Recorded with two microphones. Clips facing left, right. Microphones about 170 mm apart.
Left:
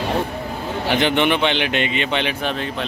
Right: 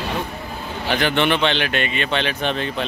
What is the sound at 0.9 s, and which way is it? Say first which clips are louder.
A man's voice: left 1 dB; 20° left (ahead or behind).